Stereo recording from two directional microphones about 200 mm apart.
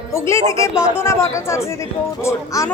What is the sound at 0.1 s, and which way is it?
Speech, 15° left (ahead or behind).